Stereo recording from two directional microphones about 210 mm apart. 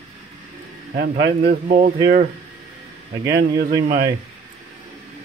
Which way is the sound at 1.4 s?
35° right (ahead or behind).